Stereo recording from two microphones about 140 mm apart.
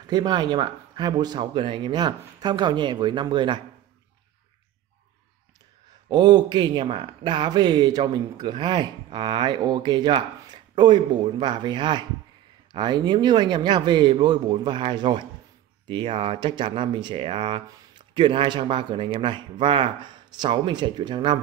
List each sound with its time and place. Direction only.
0.0 s speech: 30° right (ahead or behind)
6.0 s speech: 30° right (ahead or behind)